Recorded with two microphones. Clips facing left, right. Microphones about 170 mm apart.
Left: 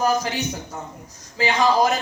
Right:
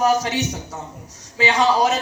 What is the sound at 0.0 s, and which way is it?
Speech, 70° right (ahead or behind).